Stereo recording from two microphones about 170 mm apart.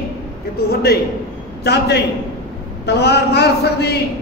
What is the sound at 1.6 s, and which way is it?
A man's voice, 75° left (ahead or behind).